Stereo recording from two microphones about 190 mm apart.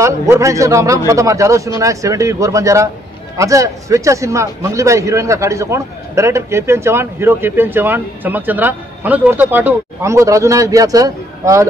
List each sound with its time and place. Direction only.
0.0 s a man's voice: 15° right (ahead or behind)